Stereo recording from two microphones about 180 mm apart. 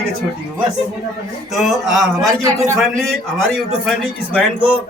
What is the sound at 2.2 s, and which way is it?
Speech, 20° right (ahead or behind).